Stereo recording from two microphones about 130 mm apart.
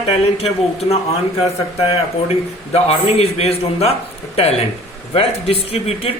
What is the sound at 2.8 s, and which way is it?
Speech, 50° left (ahead or behind).